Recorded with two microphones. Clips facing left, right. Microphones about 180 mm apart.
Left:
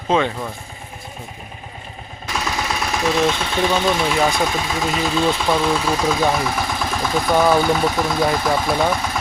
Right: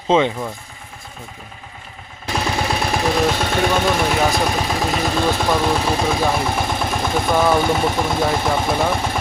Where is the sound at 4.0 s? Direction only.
45° right (ahead or behind).